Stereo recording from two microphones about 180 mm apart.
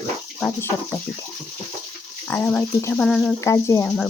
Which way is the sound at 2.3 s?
10° left (ahead or behind).